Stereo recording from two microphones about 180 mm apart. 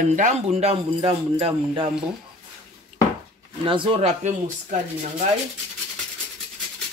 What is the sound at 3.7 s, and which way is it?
Speech, 30° right (ahead or behind).